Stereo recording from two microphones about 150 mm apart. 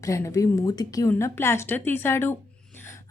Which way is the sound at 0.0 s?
20° left (ahead or behind).